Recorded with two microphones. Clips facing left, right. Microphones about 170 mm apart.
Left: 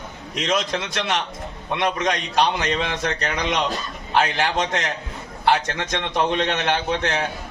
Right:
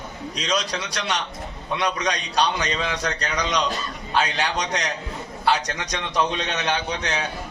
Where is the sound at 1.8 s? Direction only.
55° left (ahead or behind).